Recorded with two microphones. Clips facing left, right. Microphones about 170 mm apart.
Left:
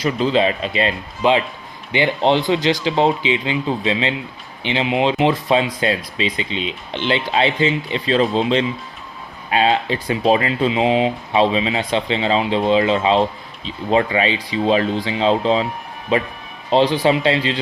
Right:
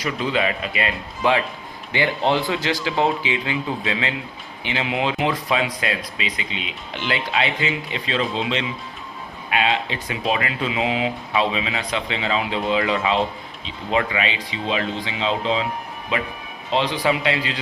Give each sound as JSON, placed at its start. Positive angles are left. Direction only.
{"t": 0.0, "sound": "speech", "side_deg": 30}